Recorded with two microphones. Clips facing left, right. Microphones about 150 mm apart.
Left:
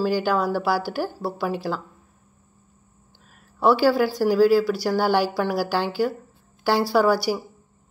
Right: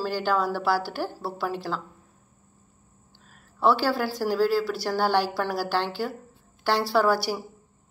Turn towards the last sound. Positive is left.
turn(degrees=5)  # may be behind; listen again after turning